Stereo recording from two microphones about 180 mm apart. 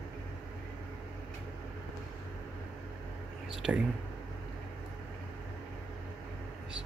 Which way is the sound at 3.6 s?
5° right (ahead or behind).